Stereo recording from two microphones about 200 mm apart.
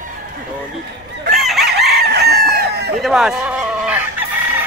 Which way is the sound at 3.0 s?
Centre (ahead or behind).